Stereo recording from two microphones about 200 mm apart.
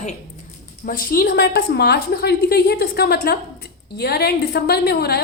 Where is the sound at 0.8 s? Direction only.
45° left (ahead or behind).